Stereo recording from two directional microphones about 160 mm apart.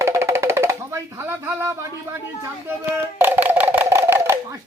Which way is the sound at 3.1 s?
10° right (ahead or behind).